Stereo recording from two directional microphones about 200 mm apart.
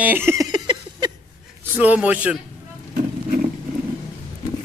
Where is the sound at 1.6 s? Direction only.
10° right (ahead or behind).